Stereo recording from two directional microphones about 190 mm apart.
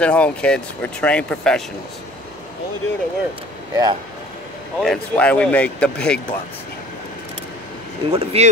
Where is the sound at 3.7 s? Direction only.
20° right (ahead or behind).